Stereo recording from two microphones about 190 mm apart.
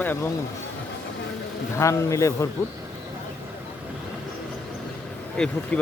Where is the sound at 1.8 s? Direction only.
15° left (ahead or behind).